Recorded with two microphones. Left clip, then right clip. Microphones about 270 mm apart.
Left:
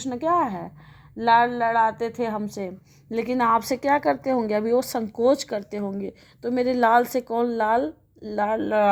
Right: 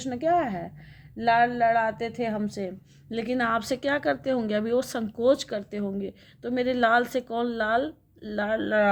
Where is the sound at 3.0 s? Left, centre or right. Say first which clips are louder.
Left 5 dB; centre.